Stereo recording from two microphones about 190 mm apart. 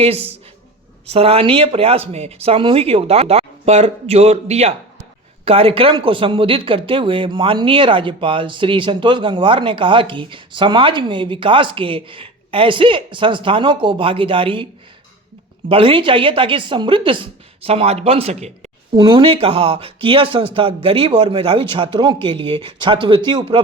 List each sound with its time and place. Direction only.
0.0 s speech: 30° right (ahead or behind)
15.7 s speech: 30° right (ahead or behind)
18.9 s speech: 25° right (ahead or behind)